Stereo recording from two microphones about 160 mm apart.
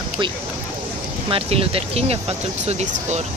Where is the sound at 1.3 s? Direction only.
35° right (ahead or behind).